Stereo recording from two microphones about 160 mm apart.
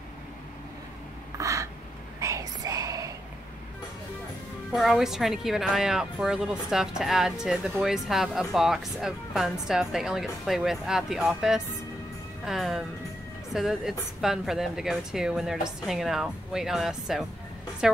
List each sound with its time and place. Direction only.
1.4 s a sound: 20° right (ahead or behind)
2.1 s whispering: 20° right (ahead or behind)
4.7 s a woman's voice: centre (ahead or behind)